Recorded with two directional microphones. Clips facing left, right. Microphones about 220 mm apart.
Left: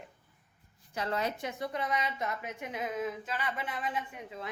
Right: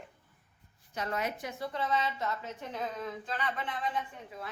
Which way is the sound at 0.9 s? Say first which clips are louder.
Left 1 dB; 30° left (ahead or behind).